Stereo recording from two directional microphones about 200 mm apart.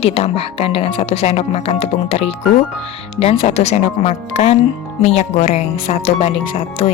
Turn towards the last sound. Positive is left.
turn(degrees=30)  # may be behind; listen again after turning